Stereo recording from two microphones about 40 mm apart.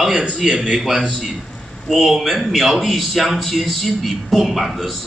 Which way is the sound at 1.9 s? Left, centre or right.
Centre.